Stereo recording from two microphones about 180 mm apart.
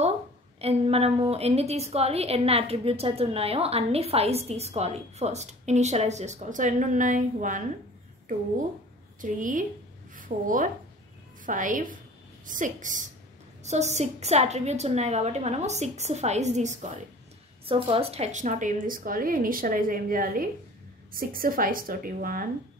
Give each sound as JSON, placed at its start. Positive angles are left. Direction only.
{"t": 0.6, "sound": "a woman's voice", "side_deg": -35}
{"t": 9.2, "sound": "a woman's voice", "side_deg": -45}